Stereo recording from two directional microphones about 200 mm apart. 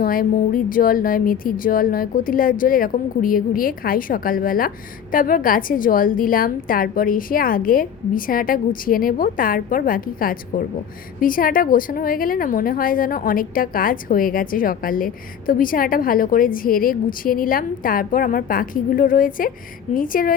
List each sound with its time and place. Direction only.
0.0 s a woman's voice: 45° left (ahead or behind)